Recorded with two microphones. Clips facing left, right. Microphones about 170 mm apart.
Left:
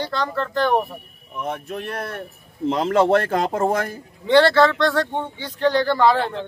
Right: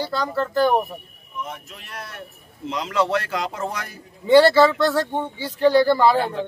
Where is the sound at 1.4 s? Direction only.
60° left (ahead or behind).